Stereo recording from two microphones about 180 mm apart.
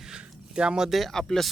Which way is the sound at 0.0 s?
5° right (ahead or behind).